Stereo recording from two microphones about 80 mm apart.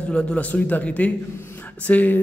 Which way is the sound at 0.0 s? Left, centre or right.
Centre.